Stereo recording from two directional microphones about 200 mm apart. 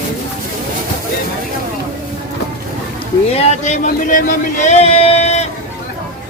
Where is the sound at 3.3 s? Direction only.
35° left (ahead or behind).